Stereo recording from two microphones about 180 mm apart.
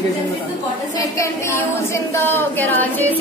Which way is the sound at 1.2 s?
15° left (ahead or behind).